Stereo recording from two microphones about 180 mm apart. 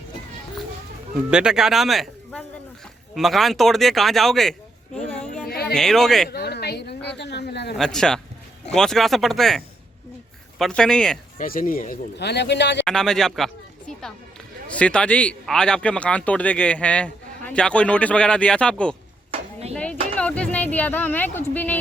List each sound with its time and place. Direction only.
1.3 s speech: 5° right (ahead or behind)
5.5 s a sound: 60° left (ahead or behind)
5.7 s speech: centre (ahead or behind)
6.2 s a sound: 65° left (ahead or behind)
7.8 s speech: 5° left (ahead or behind)
11.3 s speech: 50° left (ahead or behind)
12.1 s speech: 70° left (ahead or behind)
12.8 s speech: 5° left (ahead or behind)
19.3 s a sound: 35° right (ahead or behind)
19.7 s speech: 5° left (ahead or behind)